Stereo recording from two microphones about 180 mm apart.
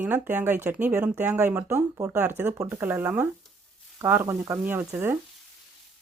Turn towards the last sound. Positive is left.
turn(degrees=-15)  # may be behind; listen again after turning